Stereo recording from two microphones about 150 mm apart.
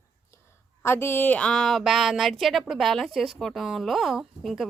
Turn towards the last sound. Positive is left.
turn(degrees=0)  # may be behind; listen again after turning